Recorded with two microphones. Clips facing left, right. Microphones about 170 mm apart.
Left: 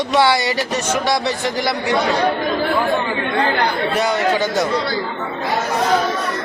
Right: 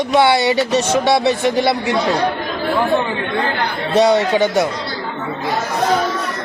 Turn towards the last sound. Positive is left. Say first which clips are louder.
# right 4 dB
turn(degrees=-25)  # may be behind; listen again after turning